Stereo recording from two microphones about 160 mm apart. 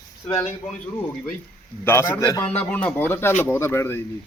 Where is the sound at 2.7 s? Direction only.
10° left (ahead or behind).